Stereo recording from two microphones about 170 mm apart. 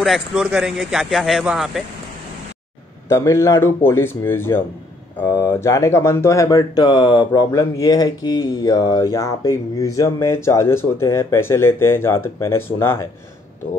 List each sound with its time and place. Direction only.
0.0 s a man's voice: centre (ahead or behind)
3.1 s speech: 15° left (ahead or behind)